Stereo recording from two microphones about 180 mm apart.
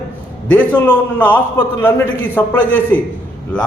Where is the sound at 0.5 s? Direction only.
10° left (ahead or behind).